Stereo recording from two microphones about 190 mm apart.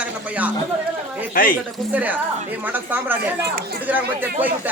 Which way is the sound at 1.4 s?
45° left (ahead or behind).